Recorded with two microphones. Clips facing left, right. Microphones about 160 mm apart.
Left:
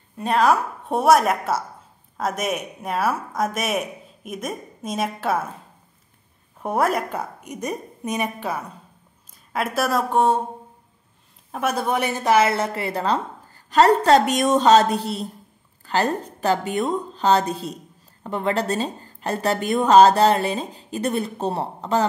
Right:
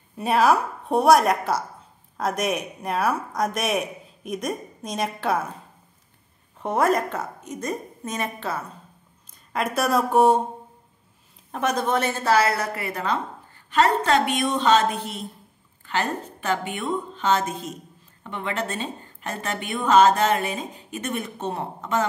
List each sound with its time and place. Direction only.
0.2 s speech: 5° right (ahead or behind)
6.6 s a woman's voice: 5° left (ahead or behind)
11.5 s a woman's voice: 10° left (ahead or behind); by 22.0 s 35° left (ahead or behind)